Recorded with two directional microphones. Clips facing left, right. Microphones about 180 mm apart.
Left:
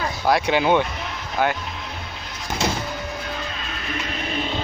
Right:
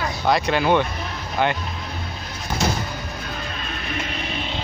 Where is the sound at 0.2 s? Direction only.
10° left (ahead or behind).